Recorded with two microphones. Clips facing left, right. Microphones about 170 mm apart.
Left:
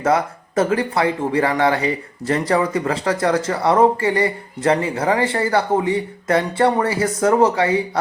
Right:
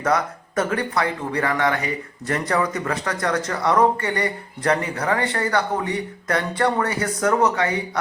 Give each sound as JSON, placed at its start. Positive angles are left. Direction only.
{"t": 0.0, "sound": "speech", "side_deg": 25}